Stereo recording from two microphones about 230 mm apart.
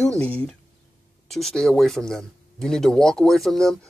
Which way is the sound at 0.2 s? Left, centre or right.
Centre.